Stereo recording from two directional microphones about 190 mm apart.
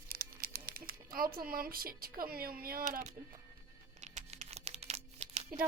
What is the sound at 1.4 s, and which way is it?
Speech, 50° right (ahead or behind).